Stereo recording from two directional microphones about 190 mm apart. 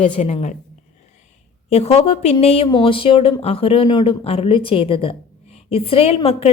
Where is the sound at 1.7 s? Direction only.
35° left (ahead or behind).